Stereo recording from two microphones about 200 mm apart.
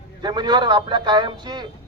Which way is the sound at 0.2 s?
20° right (ahead or behind).